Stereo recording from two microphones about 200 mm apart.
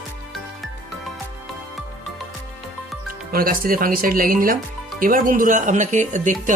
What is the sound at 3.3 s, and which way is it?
Speech, 45° right (ahead or behind).